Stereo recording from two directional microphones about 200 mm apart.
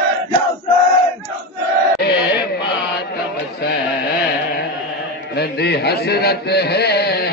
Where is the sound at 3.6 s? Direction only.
55° left (ahead or behind).